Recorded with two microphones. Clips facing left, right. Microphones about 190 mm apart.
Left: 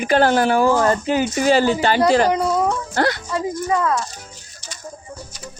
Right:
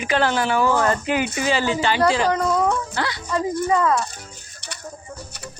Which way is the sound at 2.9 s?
50° left (ahead or behind).